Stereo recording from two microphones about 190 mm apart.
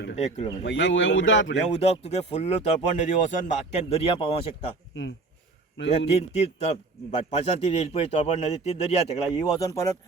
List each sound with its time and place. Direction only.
0.2 s speech: 35° left (ahead or behind)
0.6 s speech: 70° left (ahead or behind)
1.5 s speech: 35° left (ahead or behind)
6.1 s speech: 30° left (ahead or behind)
9.4 s speech: 15° left (ahead or behind)